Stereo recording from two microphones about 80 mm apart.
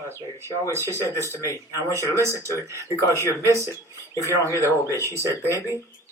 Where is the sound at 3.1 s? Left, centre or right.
Left.